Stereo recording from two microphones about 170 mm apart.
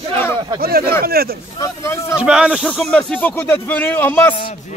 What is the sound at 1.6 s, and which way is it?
Speech, 15° left (ahead or behind).